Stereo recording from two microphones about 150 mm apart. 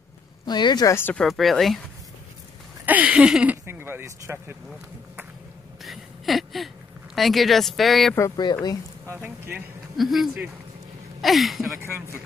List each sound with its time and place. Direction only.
0.5 s speech: 30° left (ahead or behind)
0.9 s speech: 15° left (ahead or behind)
1.2 s speech: centre (ahead or behind)
2.8 s a sound: 10° right (ahead or behind)
3.6 s speech: 15° right (ahead or behind)
5.9 s a sound: centre (ahead or behind)
7.2 s speech: centre (ahead or behind)
8.2 s speech: 30° left (ahead or behind)
9.0 s speech: 15° right (ahead or behind)
9.9 s speech: centre (ahead or behind)
11.8 s speech: 15° right (ahead or behind)